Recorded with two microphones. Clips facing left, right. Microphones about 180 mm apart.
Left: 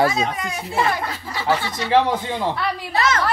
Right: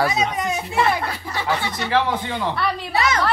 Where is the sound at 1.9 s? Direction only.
25° left (ahead or behind).